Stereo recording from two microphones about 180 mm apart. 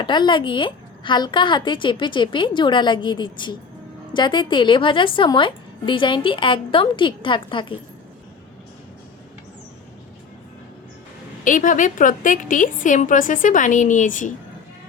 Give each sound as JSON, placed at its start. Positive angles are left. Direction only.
{"t": 0.0, "sound": "a woman's voice", "side_deg": 25}
{"t": 11.4, "sound": "a woman's voice", "side_deg": 45}